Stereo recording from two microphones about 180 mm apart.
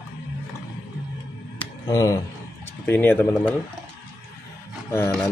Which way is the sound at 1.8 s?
20° left (ahead or behind).